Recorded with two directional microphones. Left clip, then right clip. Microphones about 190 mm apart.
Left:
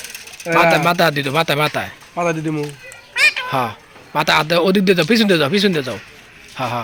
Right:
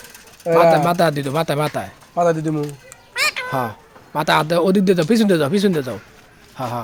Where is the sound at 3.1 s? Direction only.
10° right (ahead or behind).